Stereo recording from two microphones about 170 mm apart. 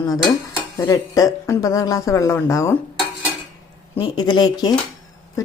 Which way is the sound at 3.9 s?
25° left (ahead or behind).